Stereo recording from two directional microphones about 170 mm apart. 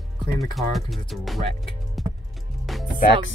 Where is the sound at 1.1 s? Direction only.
Centre (ahead or behind).